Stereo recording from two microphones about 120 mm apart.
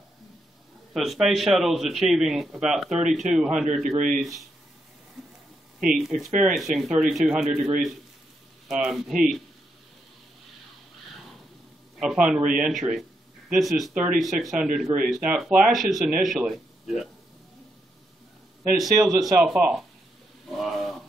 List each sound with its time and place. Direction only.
0.9 s a man's voice: centre (ahead or behind)
3.9 s speech: 90° right
4.2 s a man's voice: centre (ahead or behind)
5.8 s a man's voice: 5° right (ahead or behind)
12.0 s a man's voice: 5° right (ahead or behind)
13.5 s a man's voice: centre (ahead or behind)
18.8 s a man's voice: centre (ahead or behind)
20.4 s a sound: centre (ahead or behind)